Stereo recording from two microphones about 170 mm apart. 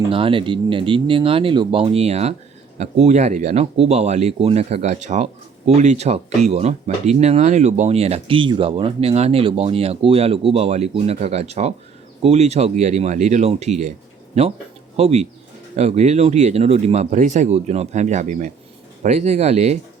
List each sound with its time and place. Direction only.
0.1 s speech: 30° right (ahead or behind)
14.9 s speech: 40° right (ahead or behind)